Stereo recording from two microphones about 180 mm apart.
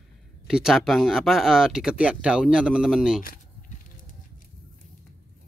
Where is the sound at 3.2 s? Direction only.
50° left (ahead or behind).